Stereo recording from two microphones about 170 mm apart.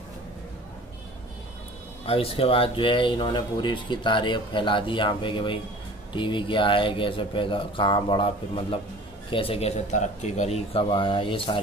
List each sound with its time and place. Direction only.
2.0 s a man's voice: 35° left (ahead or behind)